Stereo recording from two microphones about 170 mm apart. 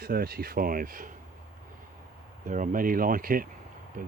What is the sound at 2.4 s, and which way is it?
Speech, 50° right (ahead or behind).